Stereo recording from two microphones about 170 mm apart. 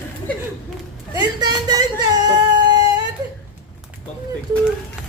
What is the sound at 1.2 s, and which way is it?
Speech, 25° right (ahead or behind).